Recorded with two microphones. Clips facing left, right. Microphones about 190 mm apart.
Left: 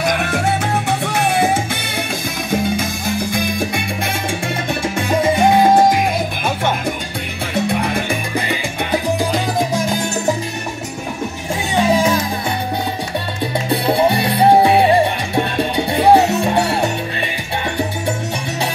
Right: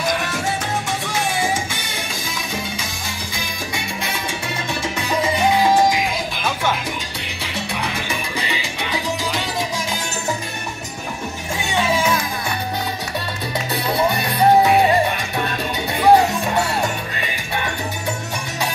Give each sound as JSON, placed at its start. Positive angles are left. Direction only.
{"t": 0.0, "sound": "music", "side_deg": 60}
{"t": 4.8, "sound": "salsa music", "side_deg": 50}
{"t": 7.5, "sound": "music", "side_deg": 55}
{"t": 11.7, "sound": "music", "side_deg": 40}
{"t": 13.7, "sound": "music", "side_deg": 30}